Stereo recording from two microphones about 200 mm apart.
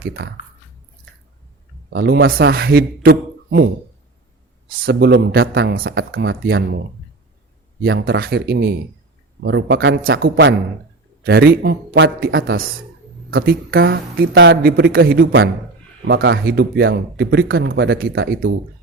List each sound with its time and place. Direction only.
0.0 s speech: 50° right (ahead or behind)
1.9 s a man's voice: 55° right (ahead or behind)
4.7 s a man's voice: 50° right (ahead or behind)